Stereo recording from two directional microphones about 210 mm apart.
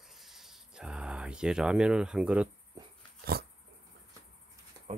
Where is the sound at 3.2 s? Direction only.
45° right (ahead or behind).